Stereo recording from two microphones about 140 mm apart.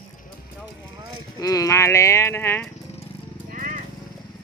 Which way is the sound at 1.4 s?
25° left (ahead or behind).